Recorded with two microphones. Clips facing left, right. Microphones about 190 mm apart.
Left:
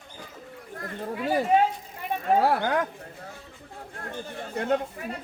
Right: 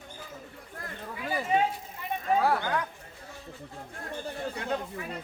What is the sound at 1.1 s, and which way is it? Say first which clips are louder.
Speech: left 7 dB; 55° left (ahead or behind).